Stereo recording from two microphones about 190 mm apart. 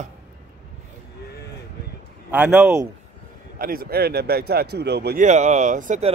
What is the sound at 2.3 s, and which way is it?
Speech, 10° right (ahead or behind).